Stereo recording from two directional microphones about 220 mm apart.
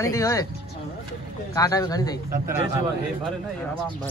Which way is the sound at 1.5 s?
15° left (ahead or behind).